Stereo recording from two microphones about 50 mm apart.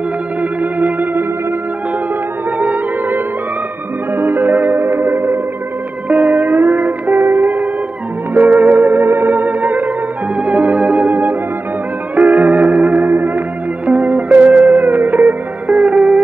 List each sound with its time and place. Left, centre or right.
0.4 s music: right
2.6 s music: right
4.1 s music: right
6.0 s music: right
8.8 s music: right
10.4 s organ: right
12.2 s music: right